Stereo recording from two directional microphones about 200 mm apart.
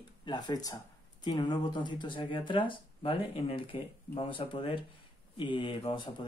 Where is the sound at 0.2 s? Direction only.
20° left (ahead or behind).